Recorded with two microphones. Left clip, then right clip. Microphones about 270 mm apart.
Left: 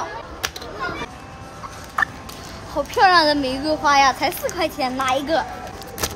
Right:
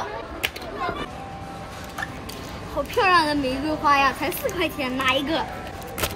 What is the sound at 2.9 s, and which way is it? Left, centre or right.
A child's voice, centre.